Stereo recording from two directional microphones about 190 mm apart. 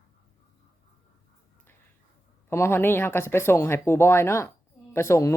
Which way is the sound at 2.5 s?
15° left (ahead or behind).